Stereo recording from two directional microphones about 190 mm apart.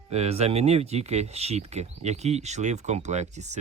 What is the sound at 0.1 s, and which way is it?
Speech, 35° right (ahead or behind).